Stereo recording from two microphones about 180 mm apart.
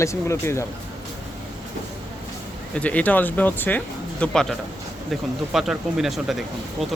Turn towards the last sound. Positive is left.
turn(degrees=0)  # may be behind; listen again after turning